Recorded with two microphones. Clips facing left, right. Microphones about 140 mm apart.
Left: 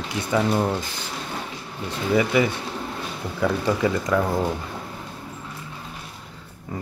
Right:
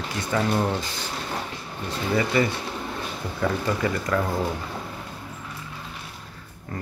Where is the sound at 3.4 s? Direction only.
15° left (ahead or behind).